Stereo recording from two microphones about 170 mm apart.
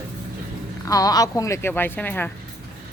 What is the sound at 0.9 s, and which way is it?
Speech, 20° left (ahead or behind).